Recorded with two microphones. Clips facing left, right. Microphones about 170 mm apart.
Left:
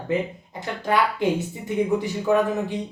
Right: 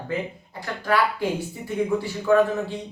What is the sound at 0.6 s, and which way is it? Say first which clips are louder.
Speech: even; 20° left (ahead or behind).